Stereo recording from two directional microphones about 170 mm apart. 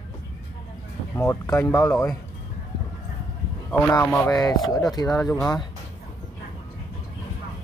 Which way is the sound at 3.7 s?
15° left (ahead or behind).